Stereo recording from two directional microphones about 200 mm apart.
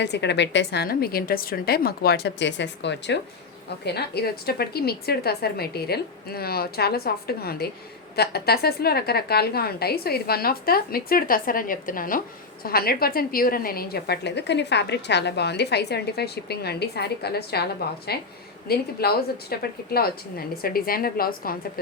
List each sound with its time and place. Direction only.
0.0 s a woman's voice: 60° left (ahead or behind)